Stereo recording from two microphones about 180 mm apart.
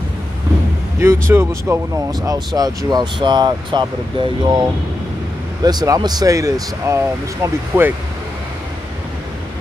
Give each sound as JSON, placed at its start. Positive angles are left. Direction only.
{"t": 0.9, "sound": "speech", "side_deg": -15}